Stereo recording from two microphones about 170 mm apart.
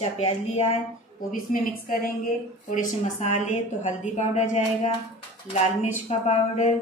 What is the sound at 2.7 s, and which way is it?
A woman's voice, 45° left (ahead or behind).